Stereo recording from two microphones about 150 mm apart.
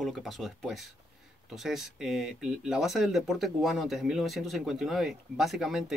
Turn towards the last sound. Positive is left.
turn(degrees=0)  # may be behind; listen again after turning